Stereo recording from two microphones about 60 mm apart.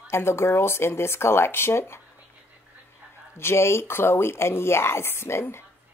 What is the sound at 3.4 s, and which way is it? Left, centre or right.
A woman's voice, left.